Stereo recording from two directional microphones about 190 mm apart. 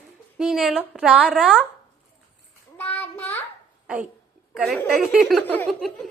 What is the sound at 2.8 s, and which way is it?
Child singing, 10° left (ahead or behind).